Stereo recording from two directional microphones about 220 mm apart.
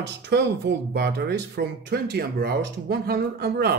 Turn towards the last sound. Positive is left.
turn(degrees=-45)  # may be behind; listen again after turning